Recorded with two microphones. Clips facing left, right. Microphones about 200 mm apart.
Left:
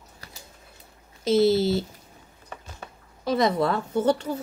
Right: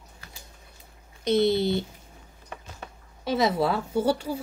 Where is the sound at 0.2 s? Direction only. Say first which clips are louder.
Left 2 dB; 40° left (ahead or behind).